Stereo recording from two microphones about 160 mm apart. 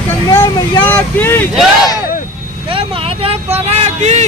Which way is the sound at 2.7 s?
35° right (ahead or behind).